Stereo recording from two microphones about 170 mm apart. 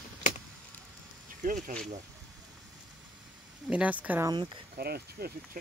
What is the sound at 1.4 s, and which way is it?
Speech, 50° right (ahead or behind).